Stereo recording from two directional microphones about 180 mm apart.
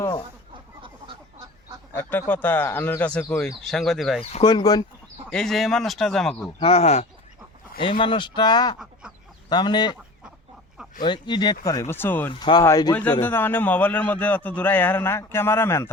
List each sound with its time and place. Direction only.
2.0 s a man's voice: 10° left (ahead or behind)
4.3 s speech: 30° left (ahead or behind)
5.3 s speech: centre (ahead or behind)
6.6 s speech: 35° left (ahead or behind)
11.0 s a man's voice: 25° left (ahead or behind)
12.3 s a man's voice: 25° left (ahead or behind)